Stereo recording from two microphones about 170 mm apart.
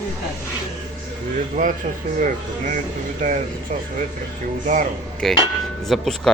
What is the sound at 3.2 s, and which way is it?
Speech, 50° right (ahead or behind).